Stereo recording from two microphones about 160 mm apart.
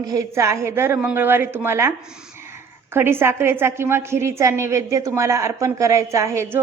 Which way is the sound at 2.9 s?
15° right (ahead or behind).